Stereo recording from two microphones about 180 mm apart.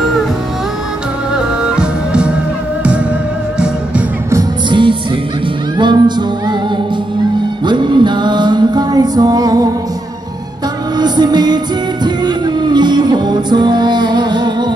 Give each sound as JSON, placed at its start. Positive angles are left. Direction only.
{"t": 1.3, "sound": "music", "side_deg": -5}
{"t": 3.5, "sound": "music", "side_deg": -5}
{"t": 4.3, "sound": "music", "side_deg": -20}
{"t": 7.6, "sound": "music", "side_deg": -25}
{"t": 11.0, "sound": "music", "side_deg": -25}